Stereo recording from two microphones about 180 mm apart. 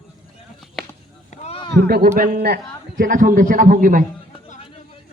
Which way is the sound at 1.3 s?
35° left (ahead or behind).